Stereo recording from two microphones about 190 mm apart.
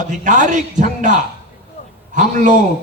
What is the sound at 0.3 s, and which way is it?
A man's voice, 40° right (ahead or behind).